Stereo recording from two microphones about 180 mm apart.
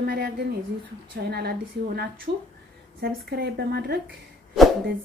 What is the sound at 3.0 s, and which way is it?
Speech, 55° right (ahead or behind).